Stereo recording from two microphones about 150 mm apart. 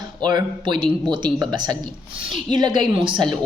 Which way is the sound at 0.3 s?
30° right (ahead or behind).